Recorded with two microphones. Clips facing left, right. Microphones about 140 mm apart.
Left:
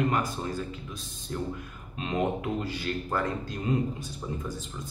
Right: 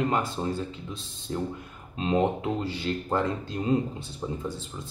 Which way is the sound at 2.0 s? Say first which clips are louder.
Right 4 dB; 30° right (ahead or behind).